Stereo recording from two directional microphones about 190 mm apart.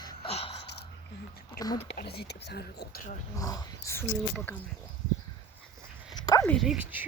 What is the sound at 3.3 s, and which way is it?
Speech, 20° left (ahead or behind).